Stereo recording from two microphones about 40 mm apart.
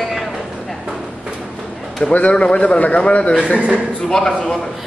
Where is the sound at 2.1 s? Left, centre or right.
Left.